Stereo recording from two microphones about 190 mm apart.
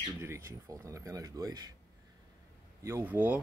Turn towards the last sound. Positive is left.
turn(degrees=-10)  # may be behind; listen again after turning